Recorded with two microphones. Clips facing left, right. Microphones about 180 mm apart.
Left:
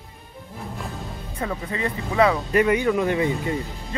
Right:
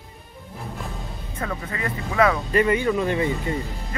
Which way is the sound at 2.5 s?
10° left (ahead or behind).